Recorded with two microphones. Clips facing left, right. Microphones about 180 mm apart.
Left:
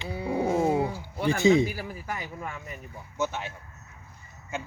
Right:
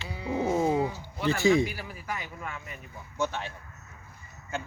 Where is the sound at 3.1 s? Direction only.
5° left (ahead or behind).